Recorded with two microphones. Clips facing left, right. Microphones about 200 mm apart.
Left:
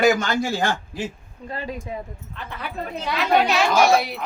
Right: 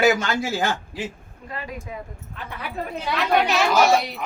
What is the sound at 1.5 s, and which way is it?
Speech, 30° left (ahead or behind).